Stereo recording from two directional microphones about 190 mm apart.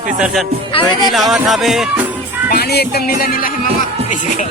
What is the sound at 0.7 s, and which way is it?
Speech, 30° left (ahead or behind).